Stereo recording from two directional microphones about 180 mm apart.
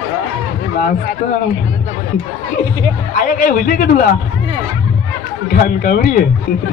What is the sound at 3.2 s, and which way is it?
Speech, 55° left (ahead or behind).